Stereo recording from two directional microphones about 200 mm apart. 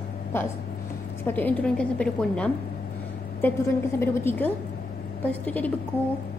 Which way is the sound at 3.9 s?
10° left (ahead or behind).